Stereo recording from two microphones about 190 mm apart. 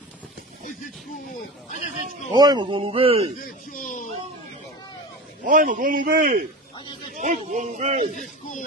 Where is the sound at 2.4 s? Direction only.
20° right (ahead or behind).